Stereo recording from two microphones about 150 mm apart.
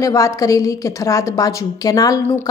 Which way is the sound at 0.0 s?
20° left (ahead or behind).